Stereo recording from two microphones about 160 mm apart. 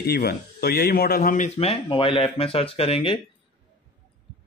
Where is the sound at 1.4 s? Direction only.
40° left (ahead or behind).